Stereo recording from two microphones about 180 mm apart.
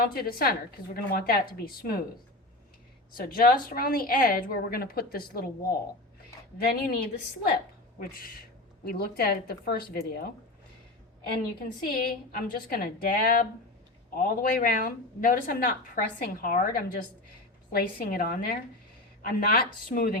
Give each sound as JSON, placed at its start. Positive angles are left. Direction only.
{"t": 0.0, "sound": "a woman's voice", "side_deg": 55}
{"t": 3.2, "sound": "a woman's voice", "side_deg": 55}
{"t": 6.6, "sound": "a woman's voice", "side_deg": 60}
{"t": 11.6, "sound": "a woman's voice", "side_deg": 55}